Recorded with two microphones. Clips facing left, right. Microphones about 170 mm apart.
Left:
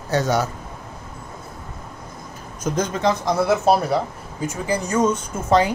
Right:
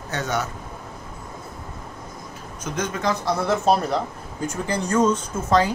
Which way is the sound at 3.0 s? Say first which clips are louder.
Left 2 dB; 25° left (ahead or behind).